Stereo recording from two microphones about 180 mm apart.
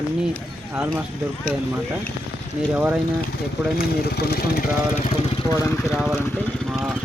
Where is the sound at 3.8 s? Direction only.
60° left (ahead or behind).